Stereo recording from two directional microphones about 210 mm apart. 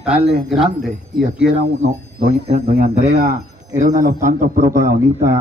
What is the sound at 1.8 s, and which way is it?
Speech, 30° right (ahead or behind).